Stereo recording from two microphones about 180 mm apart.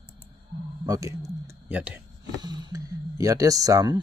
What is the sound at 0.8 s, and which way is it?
Speech, 20° right (ahead or behind).